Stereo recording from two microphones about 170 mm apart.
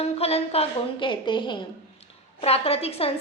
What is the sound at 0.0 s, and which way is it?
A woman's voice, 35° left (ahead or behind).